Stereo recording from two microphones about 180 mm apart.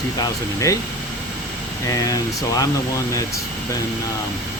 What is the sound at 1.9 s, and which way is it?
Speech, 20° left (ahead or behind).